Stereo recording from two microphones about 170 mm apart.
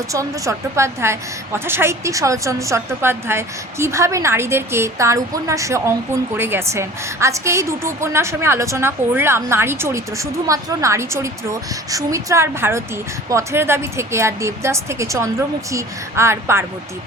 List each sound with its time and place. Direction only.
0.1 s a woman's voice: 20° right (ahead or behind)